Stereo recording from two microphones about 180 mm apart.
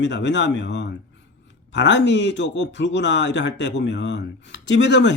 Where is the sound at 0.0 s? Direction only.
80° left.